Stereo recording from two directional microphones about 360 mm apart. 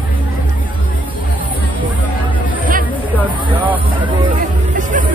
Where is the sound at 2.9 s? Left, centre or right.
Centre.